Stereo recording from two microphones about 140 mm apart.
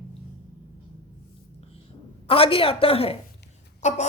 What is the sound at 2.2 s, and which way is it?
Speech, 40° left (ahead or behind).